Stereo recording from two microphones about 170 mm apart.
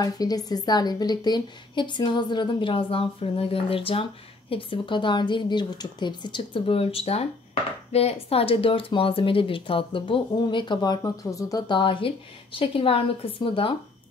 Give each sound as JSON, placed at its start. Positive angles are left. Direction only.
{"t": 0.0, "sound": "a woman's voice", "side_deg": 20}